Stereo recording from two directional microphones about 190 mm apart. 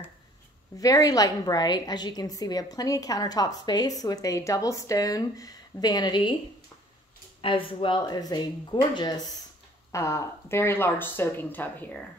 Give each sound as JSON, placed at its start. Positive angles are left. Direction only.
{"t": 0.7, "sound": "a woman's voice", "side_deg": 20}
{"t": 7.4, "sound": "a woman's voice", "side_deg": 25}